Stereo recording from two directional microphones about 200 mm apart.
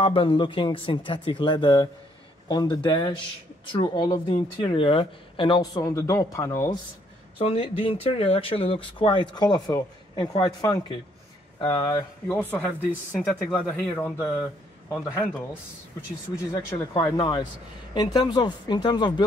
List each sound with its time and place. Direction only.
0.0 s speech: 25° left (ahead or behind)
7.3 s speech: 30° left (ahead or behind)
12.4 s speech: 5° left (ahead or behind)